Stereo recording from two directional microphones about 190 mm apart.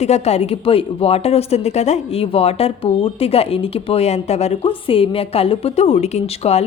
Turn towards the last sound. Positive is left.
turn(degrees=35)  # may be behind; listen again after turning